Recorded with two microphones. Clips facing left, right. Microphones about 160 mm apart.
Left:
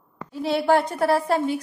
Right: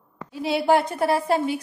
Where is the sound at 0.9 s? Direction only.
20° right (ahead or behind).